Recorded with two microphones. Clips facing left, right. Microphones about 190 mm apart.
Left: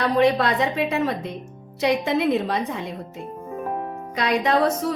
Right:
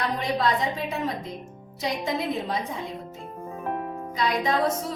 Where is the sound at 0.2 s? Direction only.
70° left (ahead or behind).